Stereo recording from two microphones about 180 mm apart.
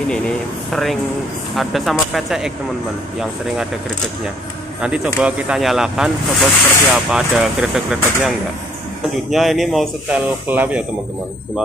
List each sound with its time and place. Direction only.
0.7 s speech: centre (ahead or behind)